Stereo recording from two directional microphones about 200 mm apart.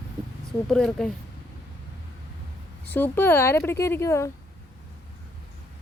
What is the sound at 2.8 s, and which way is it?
Speech, 10° left (ahead or behind).